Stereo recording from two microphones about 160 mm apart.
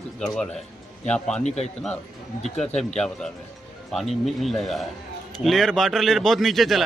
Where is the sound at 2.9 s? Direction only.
5° left (ahead or behind).